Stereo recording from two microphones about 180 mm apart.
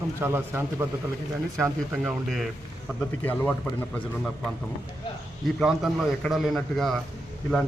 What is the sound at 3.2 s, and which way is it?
Speech, 10° left (ahead or behind).